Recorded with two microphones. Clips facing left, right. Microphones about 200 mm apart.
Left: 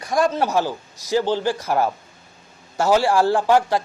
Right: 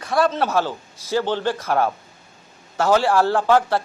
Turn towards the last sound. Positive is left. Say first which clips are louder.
# even
turn(degrees=15)  # may be behind; listen again after turning